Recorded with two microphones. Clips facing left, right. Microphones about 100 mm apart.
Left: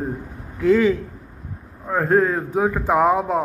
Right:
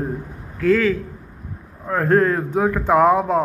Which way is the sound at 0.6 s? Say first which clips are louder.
Left 1 dB; 15° left (ahead or behind).